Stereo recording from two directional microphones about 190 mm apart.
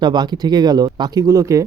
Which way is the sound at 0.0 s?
25° right (ahead or behind).